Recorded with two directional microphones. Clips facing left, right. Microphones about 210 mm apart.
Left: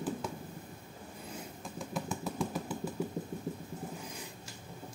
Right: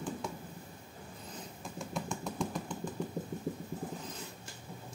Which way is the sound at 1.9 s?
5° left (ahead or behind).